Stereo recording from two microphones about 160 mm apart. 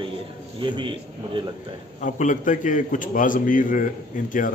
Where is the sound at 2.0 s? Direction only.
55° left (ahead or behind).